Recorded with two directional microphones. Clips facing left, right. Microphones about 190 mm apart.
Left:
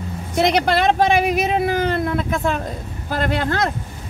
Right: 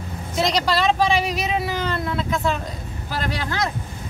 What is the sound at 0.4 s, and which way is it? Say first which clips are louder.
Speech: left 4 dB; 60° left (ahead or behind).